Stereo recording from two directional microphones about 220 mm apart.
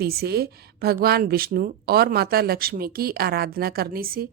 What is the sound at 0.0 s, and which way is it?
Speech, 45° right (ahead or behind).